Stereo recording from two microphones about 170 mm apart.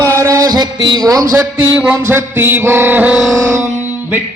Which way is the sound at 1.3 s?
10° right (ahead or behind).